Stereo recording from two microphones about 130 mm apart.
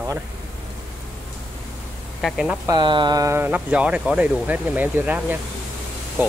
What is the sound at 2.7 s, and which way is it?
Speech, 35° right (ahead or behind).